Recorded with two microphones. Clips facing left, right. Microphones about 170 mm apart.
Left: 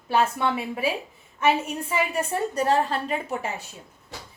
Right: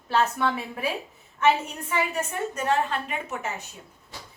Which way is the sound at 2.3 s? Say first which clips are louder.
Left 5 dB; 35° left (ahead or behind).